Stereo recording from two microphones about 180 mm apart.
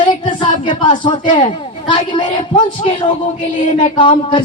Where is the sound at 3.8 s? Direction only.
25° left (ahead or behind).